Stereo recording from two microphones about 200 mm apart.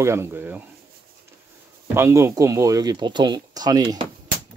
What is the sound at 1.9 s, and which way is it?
Speech, 15° right (ahead or behind).